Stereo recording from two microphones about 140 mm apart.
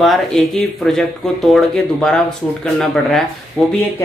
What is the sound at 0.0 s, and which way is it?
Speech, centre (ahead or behind).